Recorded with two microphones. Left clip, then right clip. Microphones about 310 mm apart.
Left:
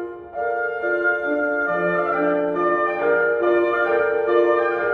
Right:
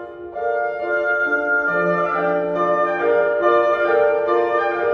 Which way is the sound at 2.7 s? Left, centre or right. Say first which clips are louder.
Right 3 dB; centre.